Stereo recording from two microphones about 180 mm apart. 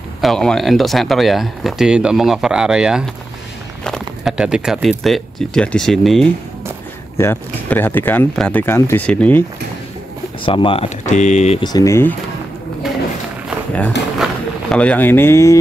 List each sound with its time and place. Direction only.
0.2 s speech: centre (ahead or behind)
7.2 s speech: 10° left (ahead or behind)
10.4 s speech: 30° left (ahead or behind)
11.6 s speech: 20° left (ahead or behind)
14.1 s speech: centre (ahead or behind)